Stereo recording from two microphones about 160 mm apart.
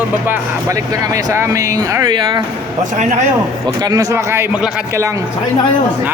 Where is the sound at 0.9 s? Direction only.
20° right (ahead or behind).